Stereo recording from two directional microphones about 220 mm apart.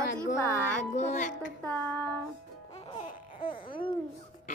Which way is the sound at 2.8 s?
25° left (ahead or behind).